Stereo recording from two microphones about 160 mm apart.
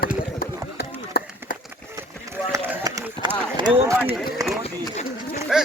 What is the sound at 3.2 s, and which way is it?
Speech, 30° right (ahead or behind).